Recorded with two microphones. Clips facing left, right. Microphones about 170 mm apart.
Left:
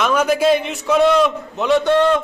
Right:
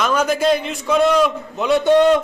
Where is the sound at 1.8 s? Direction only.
15° right (ahead or behind).